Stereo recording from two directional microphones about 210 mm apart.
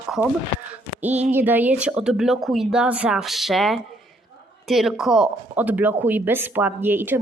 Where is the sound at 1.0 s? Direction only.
30° right (ahead or behind).